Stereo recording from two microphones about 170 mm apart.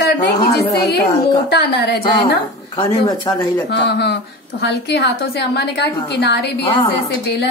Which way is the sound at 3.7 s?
85° left.